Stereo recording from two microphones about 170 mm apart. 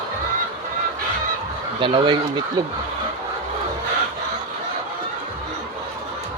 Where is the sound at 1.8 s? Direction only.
30° right (ahead or behind).